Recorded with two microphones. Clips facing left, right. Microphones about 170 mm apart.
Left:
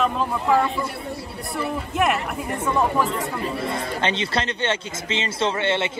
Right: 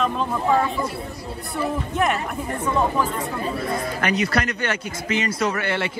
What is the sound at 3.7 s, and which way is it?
Speech, 25° left (ahead or behind).